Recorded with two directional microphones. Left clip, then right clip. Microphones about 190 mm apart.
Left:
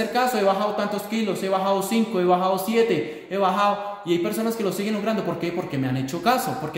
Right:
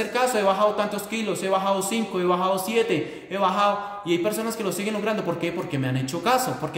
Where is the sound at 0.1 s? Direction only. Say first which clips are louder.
Even; 10° right (ahead or behind).